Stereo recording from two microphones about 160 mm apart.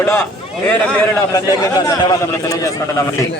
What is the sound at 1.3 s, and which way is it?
A man's voice, 20° left (ahead or behind).